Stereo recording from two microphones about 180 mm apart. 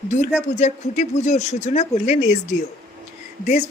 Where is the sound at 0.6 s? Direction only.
40° left (ahead or behind).